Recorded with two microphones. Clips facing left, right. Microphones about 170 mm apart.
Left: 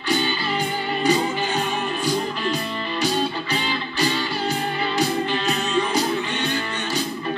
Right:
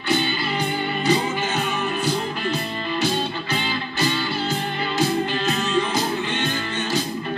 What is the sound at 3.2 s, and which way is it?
Music, 40° left (ahead or behind).